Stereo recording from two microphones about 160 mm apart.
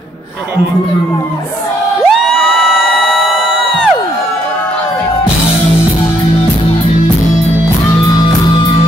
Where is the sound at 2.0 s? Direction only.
Centre (ahead or behind).